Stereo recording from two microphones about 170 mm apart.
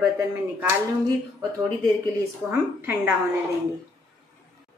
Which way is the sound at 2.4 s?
10° right (ahead or behind).